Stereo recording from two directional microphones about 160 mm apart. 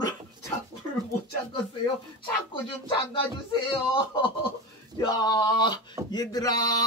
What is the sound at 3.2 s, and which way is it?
Speech, 30° left (ahead or behind).